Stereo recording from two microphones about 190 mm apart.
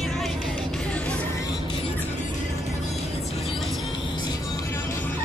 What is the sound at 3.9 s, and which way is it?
Music, 25° left (ahead or behind).